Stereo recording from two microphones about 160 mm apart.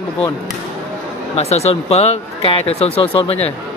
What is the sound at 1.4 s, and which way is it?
Speech, 40° left (ahead or behind).